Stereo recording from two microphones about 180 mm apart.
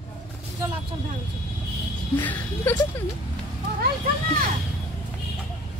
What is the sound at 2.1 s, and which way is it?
Music, 10° left (ahead or behind).